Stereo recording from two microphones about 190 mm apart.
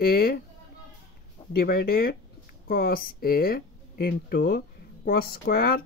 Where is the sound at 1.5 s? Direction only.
55° left (ahead or behind).